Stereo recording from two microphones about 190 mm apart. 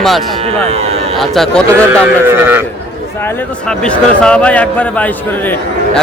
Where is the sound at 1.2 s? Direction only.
Centre (ahead or behind).